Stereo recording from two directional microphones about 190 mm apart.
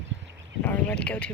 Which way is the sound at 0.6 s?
10° left (ahead or behind).